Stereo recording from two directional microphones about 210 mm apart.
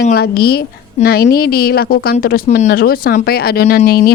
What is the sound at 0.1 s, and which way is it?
Speech, 50° left (ahead or behind).